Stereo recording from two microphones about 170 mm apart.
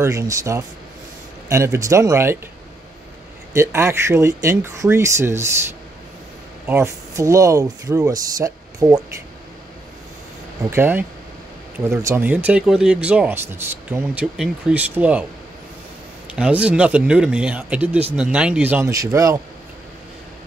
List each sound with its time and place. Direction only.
0.0 s speech: 20° right (ahead or behind)
3.5 s speech: 15° right (ahead or behind)
6.6 s speech: 15° right (ahead or behind)
10.7 s speech: 10° right (ahead or behind)
16.3 s speech: 5° right (ahead or behind)